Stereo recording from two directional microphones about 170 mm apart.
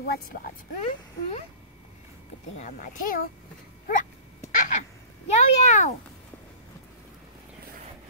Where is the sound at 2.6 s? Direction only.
50° left (ahead or behind).